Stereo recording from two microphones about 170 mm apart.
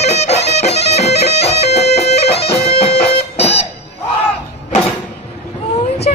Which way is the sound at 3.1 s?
35° left (ahead or behind).